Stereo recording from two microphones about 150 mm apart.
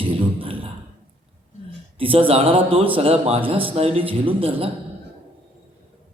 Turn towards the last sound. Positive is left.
turn(degrees=-40)  # may be behind; listen again after turning